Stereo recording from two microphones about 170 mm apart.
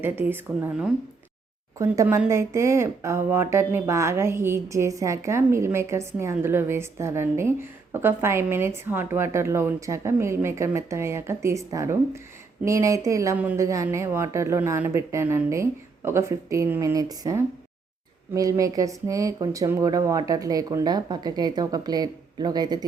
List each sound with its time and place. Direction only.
0.0 s speech: 10° right (ahead or behind)